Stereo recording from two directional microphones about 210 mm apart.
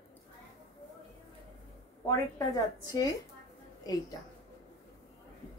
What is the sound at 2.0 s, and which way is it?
A woman's voice, 15° left (ahead or behind).